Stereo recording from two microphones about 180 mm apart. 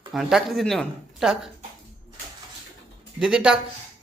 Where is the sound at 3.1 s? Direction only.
5° right (ahead or behind).